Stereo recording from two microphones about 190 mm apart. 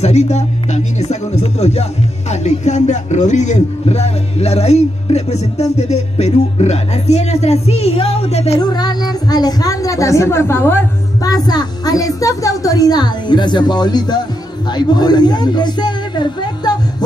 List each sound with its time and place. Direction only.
0.0 s a man's voice: 35° left (ahead or behind)
8.5 s a woman's voice: 20° left (ahead or behind)